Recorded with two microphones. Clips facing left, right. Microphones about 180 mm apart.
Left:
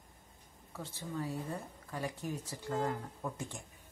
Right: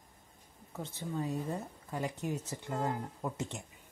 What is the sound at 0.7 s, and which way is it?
Speech, 20° right (ahead or behind).